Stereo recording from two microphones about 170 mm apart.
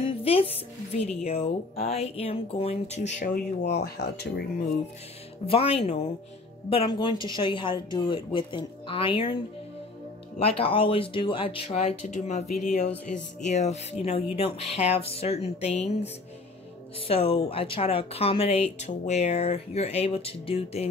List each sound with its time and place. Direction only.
0.0 s speech: 35° left (ahead or behind); by 3.7 s 50° left (ahead or behind)
3.8 s speech: 70° left (ahead or behind)
5.5 s speech: 35° left (ahead or behind)
10.4 s speech: 35° left (ahead or behind)
17.1 s speech: 35° left (ahead or behind)